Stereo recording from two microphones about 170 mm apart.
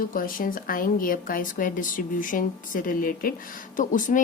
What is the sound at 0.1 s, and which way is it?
A woman's voice, 55° left (ahead or behind).